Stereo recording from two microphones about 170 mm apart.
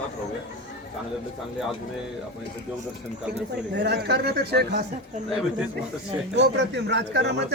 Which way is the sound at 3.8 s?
80° right.